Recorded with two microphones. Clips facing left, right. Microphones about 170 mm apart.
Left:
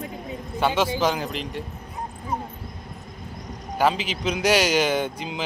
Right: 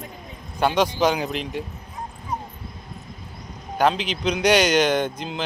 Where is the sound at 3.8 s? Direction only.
5° left (ahead or behind).